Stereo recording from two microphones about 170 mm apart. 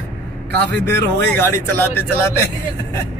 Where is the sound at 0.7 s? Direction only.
10° left (ahead or behind).